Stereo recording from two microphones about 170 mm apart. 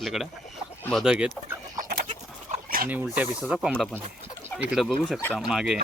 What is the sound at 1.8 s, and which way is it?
Bird, 65° right (ahead or behind).